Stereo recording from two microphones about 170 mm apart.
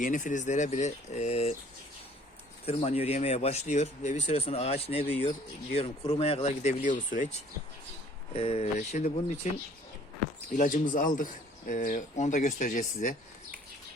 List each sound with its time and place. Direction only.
0.0 s speech: 50° left (ahead or behind)
2.6 s speech: 40° left (ahead or behind)
10.5 s speech: 50° left (ahead or behind)